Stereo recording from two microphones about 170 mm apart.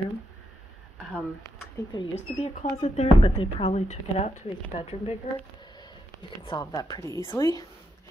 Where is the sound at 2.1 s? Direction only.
40° left (ahead or behind).